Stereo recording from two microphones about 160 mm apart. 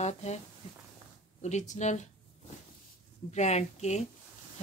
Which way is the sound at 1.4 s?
45° left (ahead or behind).